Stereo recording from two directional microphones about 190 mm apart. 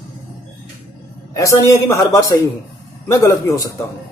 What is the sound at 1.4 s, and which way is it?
A man's voice, 15° left (ahead or behind).